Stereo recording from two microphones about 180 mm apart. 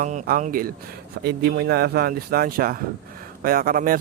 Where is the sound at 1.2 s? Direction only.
65° right (ahead or behind).